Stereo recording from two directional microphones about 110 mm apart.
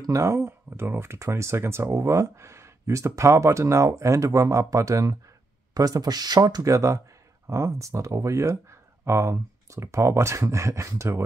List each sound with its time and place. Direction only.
0.0 s speech: 30° right (ahead or behind)